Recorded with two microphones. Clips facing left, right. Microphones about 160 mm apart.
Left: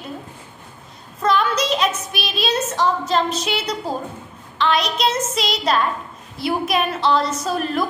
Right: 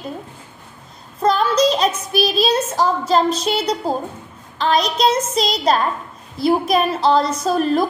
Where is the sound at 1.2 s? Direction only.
35° right (ahead or behind).